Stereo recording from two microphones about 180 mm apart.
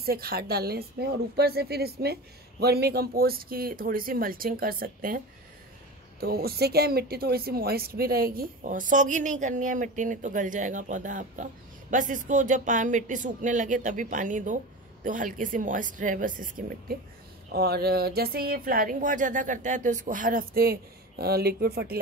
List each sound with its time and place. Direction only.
0.0 s speech: 55° right (ahead or behind)